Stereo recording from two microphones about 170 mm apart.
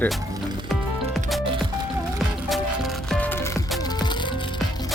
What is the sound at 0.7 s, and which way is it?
Music, centre (ahead or behind).